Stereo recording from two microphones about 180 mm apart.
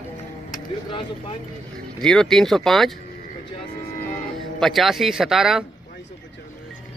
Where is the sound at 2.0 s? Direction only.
5° left (ahead or behind).